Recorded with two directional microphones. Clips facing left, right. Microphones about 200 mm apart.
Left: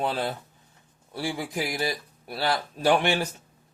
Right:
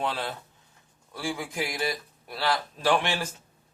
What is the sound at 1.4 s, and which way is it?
Speech, 35° left (ahead or behind).